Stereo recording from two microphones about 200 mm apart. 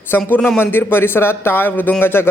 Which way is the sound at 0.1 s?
10° left (ahead or behind).